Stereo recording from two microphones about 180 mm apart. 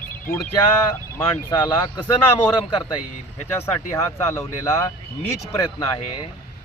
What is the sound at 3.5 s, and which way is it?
Speech, 15° left (ahead or behind).